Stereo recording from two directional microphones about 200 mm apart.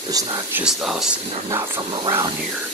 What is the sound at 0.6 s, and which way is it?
Speech, 5° right (ahead or behind).